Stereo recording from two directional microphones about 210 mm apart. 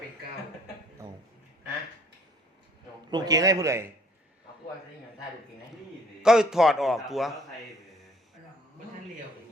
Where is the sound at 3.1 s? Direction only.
15° right (ahead or behind).